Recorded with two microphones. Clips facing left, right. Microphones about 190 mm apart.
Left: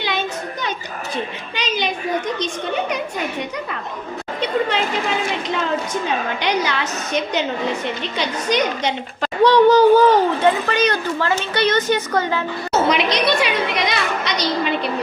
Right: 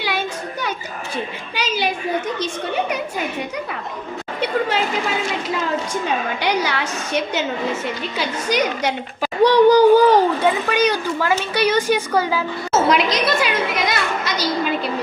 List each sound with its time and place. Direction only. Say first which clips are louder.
0.0 s a sound: left 1 dB; 10° right (ahead or behind)
1.1 s a woman's voice: even; 10° right (ahead or behind)
4.4 s a woman's voice: even; 5° right (ahead or behind)